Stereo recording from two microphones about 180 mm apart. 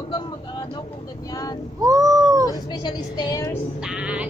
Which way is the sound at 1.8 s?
20° right (ahead or behind).